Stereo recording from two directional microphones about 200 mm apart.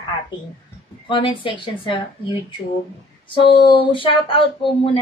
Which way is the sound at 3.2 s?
25° left (ahead or behind).